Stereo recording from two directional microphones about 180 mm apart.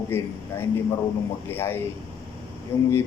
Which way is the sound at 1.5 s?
10° left (ahead or behind).